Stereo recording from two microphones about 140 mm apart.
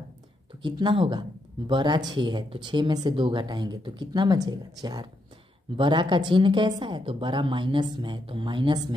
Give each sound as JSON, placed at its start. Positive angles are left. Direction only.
{"t": 0.6, "sound": "speech", "side_deg": -35}
{"t": 5.8, "sound": "speech", "side_deg": -35}